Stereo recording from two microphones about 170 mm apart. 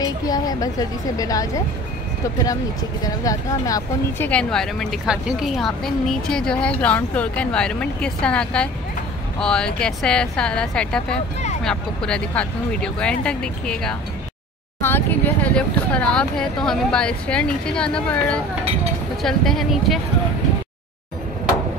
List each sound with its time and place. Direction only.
0.0 s speech: 20° left (ahead or behind)
4.3 s a woman's voice: 5° left (ahead or behind)